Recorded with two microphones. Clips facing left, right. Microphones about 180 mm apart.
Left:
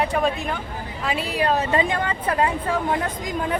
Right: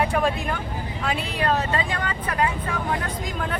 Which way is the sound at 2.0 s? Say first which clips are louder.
Left 3 dB; 30° left (ahead or behind).